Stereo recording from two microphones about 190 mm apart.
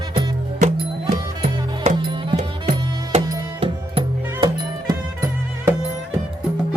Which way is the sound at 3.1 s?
25° right (ahead or behind).